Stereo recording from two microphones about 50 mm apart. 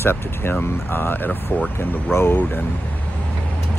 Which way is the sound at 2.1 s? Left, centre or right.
Left.